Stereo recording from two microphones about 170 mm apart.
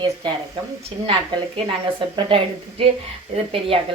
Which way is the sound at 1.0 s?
35° right (ahead or behind).